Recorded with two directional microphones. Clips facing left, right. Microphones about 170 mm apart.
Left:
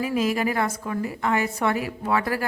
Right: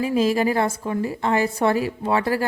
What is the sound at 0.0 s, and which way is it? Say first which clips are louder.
A woman's voice: right 4 dB; 30° right (ahead or behind).